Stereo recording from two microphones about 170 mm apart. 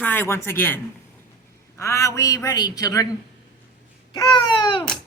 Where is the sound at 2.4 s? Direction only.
20° left (ahead or behind).